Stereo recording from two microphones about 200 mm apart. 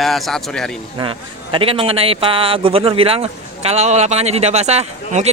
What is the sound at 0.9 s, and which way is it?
A man's voice, 25° right (ahead or behind).